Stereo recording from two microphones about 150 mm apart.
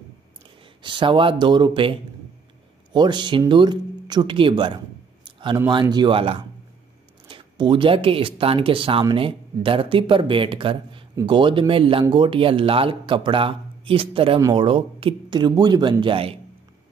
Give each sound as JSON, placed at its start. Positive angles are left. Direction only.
{"t": 0.8, "sound": "speech", "side_deg": -35}